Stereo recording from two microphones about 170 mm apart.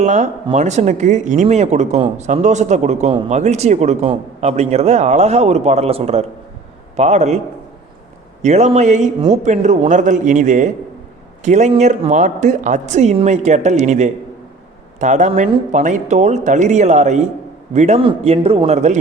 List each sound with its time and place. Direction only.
0.0 s a man's voice: 45° right (ahead or behind)